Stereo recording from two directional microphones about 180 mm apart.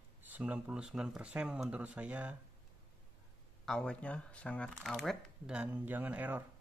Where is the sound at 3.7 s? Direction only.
5° left (ahead or behind).